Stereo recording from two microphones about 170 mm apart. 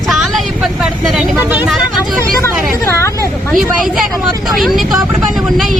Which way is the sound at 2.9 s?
15° left (ahead or behind).